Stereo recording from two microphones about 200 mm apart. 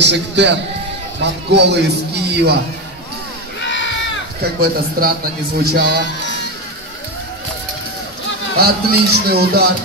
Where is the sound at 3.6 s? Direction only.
65° left (ahead or behind).